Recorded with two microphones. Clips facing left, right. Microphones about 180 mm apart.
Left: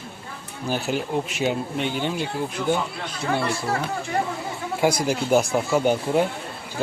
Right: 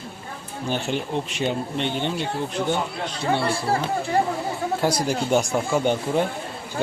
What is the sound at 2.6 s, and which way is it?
Speech, 30° right (ahead or behind).